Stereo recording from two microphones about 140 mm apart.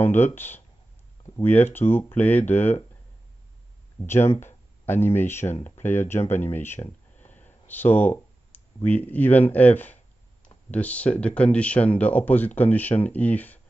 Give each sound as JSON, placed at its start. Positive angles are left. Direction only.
{"t": 0.0, "sound": "speech", "side_deg": 15}
{"t": 4.0, "sound": "speech", "side_deg": 15}